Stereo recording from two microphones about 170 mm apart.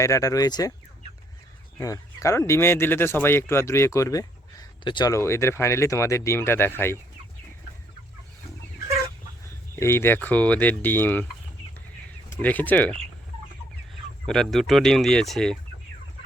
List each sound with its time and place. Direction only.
0.0 s speech: 20° left (ahead or behind)
1.8 s speech: 20° left (ahead or behind)
9.7 s speech: 15° left (ahead or behind)
12.4 s speech: 10° left (ahead or behind)
14.3 s speech: 5° left (ahead or behind)